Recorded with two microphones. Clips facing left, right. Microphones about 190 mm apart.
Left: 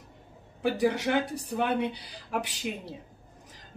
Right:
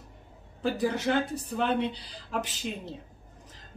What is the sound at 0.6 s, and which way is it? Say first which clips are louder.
Speech: left 2 dB; 65° left (ahead or behind).